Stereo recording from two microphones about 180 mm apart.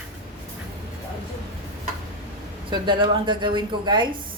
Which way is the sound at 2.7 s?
25° right (ahead or behind).